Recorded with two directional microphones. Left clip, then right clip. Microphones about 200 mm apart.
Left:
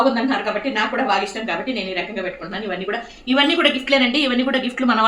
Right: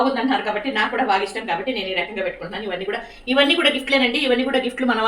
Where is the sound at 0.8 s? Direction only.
20° left (ahead or behind).